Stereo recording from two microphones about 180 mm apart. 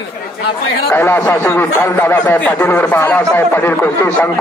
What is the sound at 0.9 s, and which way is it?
Speech, 15° left (ahead or behind).